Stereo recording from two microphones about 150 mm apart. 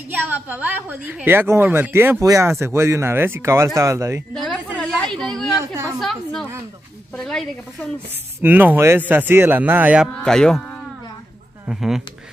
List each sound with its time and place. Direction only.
0.2 s a woman's voice: 10° right (ahead or behind)
4.3 s a sound: 5° left (ahead or behind)
7.2 s speech: centre (ahead or behind)
8.4 s a woman's voice: 10° right (ahead or behind)
10.1 s speech: 5° left (ahead or behind)
11.6 s speech: 5° right (ahead or behind)